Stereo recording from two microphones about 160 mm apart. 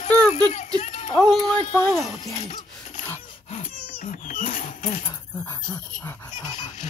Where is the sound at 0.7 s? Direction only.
40° left (ahead or behind).